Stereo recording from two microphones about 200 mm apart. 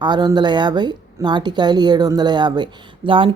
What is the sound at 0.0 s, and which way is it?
A woman's voice, 20° right (ahead or behind).